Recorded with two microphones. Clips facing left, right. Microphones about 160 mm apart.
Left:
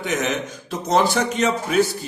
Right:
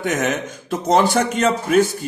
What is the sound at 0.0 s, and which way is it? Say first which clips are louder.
A man's voice: right 2 dB; 50° right (ahead or behind).